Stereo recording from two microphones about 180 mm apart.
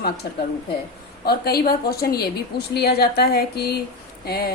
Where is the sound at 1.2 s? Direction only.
60° left (ahead or behind).